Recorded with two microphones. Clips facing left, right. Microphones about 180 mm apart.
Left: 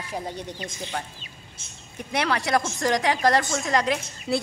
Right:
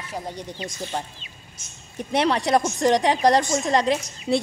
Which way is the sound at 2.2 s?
25° right (ahead or behind).